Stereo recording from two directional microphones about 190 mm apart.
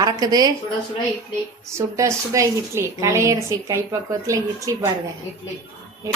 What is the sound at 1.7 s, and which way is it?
A woman's voice, 15° right (ahead or behind).